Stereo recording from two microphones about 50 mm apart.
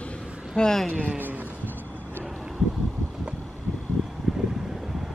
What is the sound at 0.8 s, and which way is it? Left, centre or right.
Speech, right.